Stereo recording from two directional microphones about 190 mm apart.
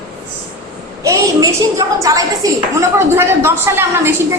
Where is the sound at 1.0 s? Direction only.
15° right (ahead or behind).